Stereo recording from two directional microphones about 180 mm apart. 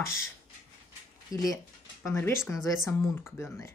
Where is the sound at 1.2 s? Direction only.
20° left (ahead or behind).